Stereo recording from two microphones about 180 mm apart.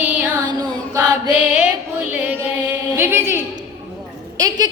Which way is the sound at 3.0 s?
15° right (ahead or behind).